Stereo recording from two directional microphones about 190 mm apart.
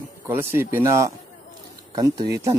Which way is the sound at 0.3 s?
10° right (ahead or behind).